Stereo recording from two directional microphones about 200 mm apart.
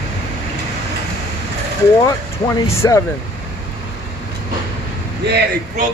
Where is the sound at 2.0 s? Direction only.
15° left (ahead or behind).